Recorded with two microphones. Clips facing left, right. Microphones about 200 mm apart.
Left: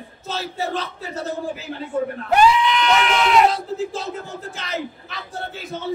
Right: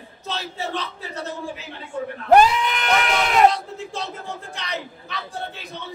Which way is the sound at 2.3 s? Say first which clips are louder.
Right 1 dB; 45° right (ahead or behind).